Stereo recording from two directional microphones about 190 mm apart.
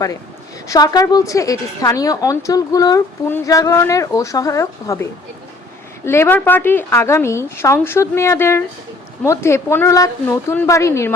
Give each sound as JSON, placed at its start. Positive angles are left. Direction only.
{"t": 0.7, "sound": "a woman's voice", "side_deg": 20}
{"t": 6.1, "sound": "a woman's voice", "side_deg": 10}